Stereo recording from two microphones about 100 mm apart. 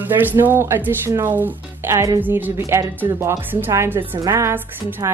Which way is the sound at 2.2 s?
20° right (ahead or behind).